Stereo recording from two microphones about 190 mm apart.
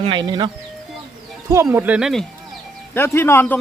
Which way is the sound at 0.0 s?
25° right (ahead or behind).